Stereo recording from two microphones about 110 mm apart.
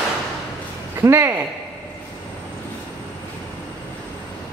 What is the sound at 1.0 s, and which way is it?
Speech, 25° right (ahead or behind).